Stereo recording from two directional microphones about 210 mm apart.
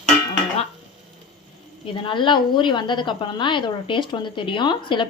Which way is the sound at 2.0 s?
25° left (ahead or behind).